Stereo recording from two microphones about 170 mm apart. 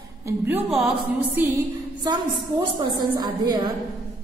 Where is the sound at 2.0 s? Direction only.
25° right (ahead or behind).